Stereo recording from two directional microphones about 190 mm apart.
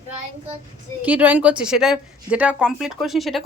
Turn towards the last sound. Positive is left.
turn(degrees=0)  # may be behind; listen again after turning